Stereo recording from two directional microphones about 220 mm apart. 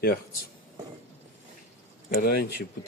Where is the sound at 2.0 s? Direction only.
40° left (ahead or behind).